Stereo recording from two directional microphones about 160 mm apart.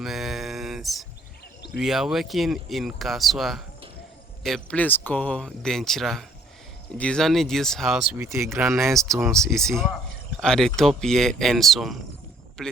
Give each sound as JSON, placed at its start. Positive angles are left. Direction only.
{"t": 0.0, "sound": "a sound", "side_deg": 0}
{"t": 1.8, "sound": "speech", "side_deg": -5}
{"t": 8.2, "sound": "speech", "side_deg": -15}
{"t": 9.2, "sound": "speech", "side_deg": 5}